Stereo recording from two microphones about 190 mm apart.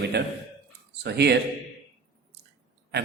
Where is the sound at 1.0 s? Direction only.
60° right (ahead or behind).